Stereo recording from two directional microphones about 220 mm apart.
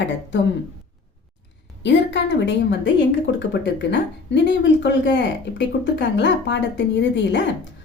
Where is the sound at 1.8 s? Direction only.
55° left (ahead or behind).